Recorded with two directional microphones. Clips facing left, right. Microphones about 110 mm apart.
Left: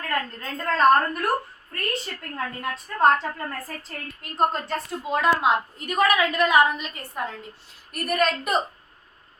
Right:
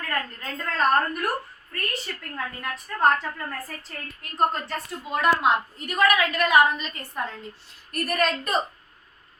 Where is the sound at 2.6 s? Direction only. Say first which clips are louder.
Left 3 dB; 30° left (ahead or behind).